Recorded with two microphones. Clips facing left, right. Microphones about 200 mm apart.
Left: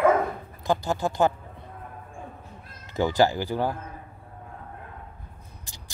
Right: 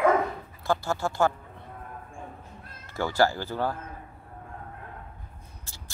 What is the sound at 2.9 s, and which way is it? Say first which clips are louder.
Speech: left 3 dB; 15° left (ahead or behind).